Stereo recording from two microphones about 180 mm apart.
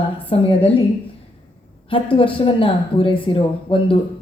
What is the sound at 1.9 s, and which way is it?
A woman's voice, 30° left (ahead or behind).